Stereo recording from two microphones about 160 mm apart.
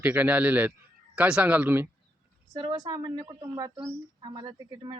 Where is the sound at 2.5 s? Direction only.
25° right (ahead or behind).